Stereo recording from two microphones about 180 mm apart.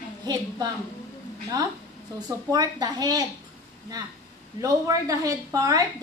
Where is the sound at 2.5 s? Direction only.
20° right (ahead or behind).